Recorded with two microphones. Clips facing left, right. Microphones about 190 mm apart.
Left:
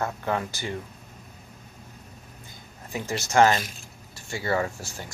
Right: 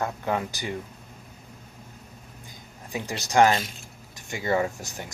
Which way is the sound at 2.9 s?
15° right (ahead or behind).